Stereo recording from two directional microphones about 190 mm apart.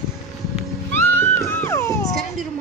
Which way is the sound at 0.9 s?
10° left (ahead or behind).